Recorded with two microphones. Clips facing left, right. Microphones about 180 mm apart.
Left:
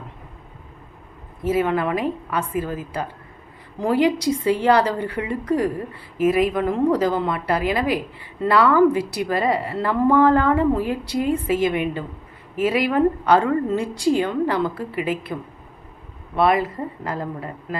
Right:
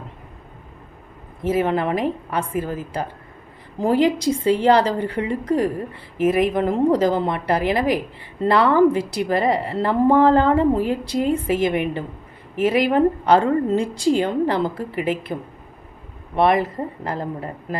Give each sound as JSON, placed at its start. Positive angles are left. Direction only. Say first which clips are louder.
{"t": 1.5, "sound": "a woman's voice", "louder": "right 1 dB", "side_deg": -30}
{"t": 16.3, "sound": "a woman's voice", "louder": "right 1 dB", "side_deg": -25}